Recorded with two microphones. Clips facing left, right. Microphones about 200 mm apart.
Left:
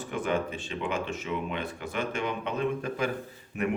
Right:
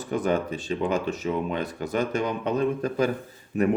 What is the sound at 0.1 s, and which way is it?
Speech, 40° right (ahead or behind).